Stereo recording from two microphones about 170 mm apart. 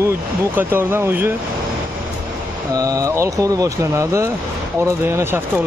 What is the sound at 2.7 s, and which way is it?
Speech, 20° right (ahead or behind).